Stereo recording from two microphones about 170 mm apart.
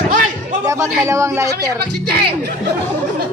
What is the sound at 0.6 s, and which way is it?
A man's voice, 20° right (ahead or behind).